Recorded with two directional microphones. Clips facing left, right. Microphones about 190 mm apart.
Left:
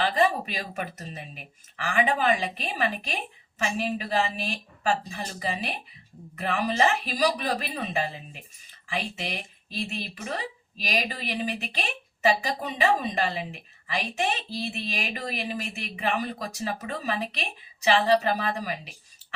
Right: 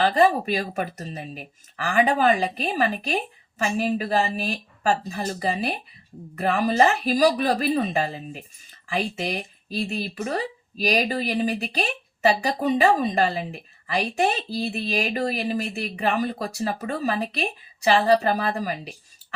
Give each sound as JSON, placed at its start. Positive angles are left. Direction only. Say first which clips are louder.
{"t": 0.0, "sound": "speech", "louder": "right 5 dB", "side_deg": -40}